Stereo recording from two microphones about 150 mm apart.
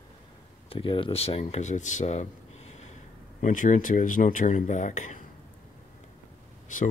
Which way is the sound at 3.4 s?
60° left (ahead or behind).